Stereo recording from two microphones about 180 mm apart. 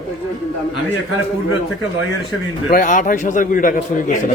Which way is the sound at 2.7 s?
45° left (ahead or behind).